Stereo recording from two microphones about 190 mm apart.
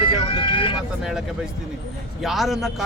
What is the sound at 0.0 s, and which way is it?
Vehicle, 25° left (ahead or behind).